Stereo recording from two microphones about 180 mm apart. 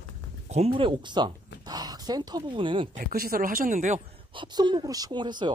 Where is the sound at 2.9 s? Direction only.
50° right (ahead or behind).